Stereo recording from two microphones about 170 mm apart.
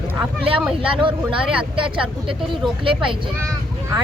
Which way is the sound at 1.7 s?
30° right (ahead or behind).